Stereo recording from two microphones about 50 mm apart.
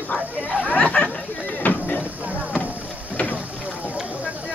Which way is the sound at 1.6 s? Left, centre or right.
Left.